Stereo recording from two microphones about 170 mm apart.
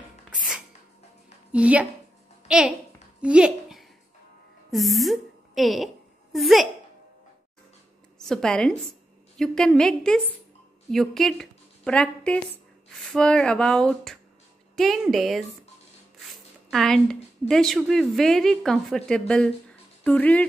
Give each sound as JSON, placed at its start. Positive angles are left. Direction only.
{"t": 1.5, "sound": "a woman's voice", "side_deg": -5}
{"t": 3.2, "sound": "a sound", "side_deg": -5}
{"t": 4.6, "sound": "a woman's voice", "side_deg": 0}
{"t": 8.2, "sound": "a woman's voice", "side_deg": 5}